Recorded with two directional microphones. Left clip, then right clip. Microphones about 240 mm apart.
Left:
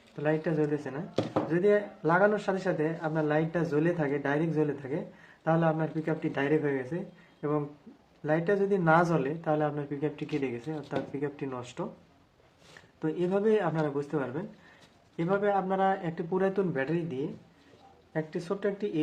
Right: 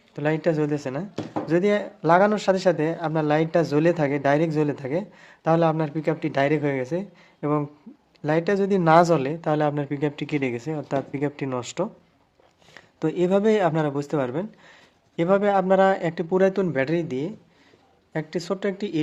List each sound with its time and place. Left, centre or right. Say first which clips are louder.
0.2 s a man's voice: right 6 dB; right
13.0 s a man's voice: right 8 dB; right